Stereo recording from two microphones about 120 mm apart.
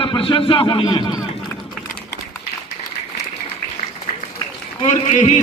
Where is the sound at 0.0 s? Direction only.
45° left (ahead or behind).